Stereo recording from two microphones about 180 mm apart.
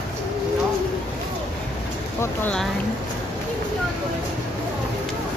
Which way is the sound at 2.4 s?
5° left (ahead or behind).